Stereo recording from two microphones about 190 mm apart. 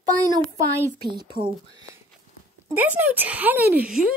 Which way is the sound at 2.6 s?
10° right (ahead or behind).